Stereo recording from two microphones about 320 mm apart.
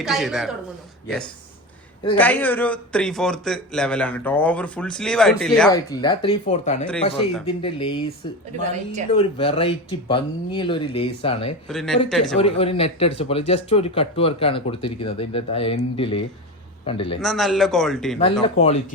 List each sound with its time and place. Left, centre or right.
0.0 s a man's voice: centre
6.0 s speech: centre
9.1 s speech: centre
11.7 s a man's voice: centre
12.4 s speech: centre
17.2 s a man's voice: centre
18.4 s speech: centre